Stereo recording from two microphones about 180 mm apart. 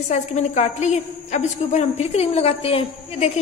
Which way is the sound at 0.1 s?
40° left (ahead or behind).